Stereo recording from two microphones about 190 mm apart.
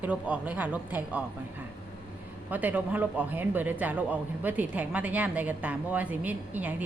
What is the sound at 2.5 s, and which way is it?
Speech, 10° right (ahead or behind).